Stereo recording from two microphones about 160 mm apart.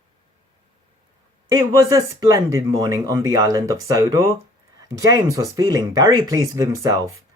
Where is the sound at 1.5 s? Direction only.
20° right (ahead or behind).